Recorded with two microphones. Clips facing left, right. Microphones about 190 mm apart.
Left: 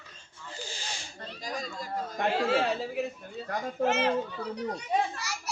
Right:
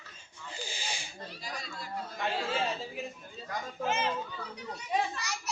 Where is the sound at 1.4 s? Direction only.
45° left (ahead or behind).